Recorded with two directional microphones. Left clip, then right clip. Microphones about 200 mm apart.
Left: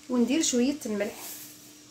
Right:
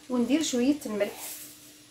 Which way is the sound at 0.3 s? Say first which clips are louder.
Right 3 dB; 40° left (ahead or behind).